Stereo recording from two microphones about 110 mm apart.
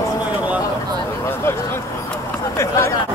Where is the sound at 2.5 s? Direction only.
25° left (ahead or behind).